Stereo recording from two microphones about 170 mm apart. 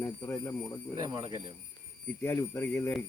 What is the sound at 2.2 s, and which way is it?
Speech, 10° left (ahead or behind).